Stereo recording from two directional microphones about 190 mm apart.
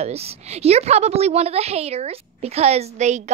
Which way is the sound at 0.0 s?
35° right (ahead or behind).